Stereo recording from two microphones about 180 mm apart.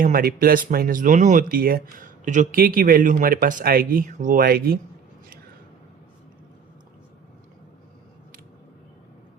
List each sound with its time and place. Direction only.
0.0 s speech: 55° right (ahead or behind)